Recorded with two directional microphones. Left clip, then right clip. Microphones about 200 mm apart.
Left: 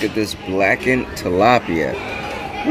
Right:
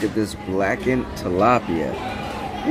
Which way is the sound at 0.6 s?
15° left (ahead or behind).